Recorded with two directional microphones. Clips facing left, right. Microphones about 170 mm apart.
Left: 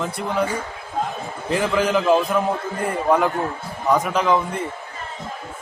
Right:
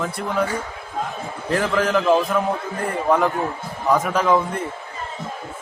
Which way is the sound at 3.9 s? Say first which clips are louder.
Even; centre (ahead or behind).